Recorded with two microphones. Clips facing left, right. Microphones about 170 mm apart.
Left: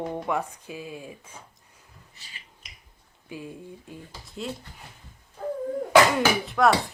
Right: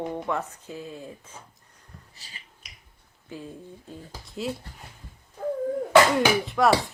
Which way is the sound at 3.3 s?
15° left (ahead or behind).